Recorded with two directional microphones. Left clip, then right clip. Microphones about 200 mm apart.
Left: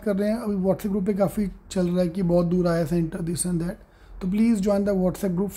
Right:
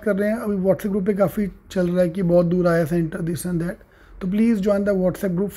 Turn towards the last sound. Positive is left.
turn(degrees=-5)  # may be behind; listen again after turning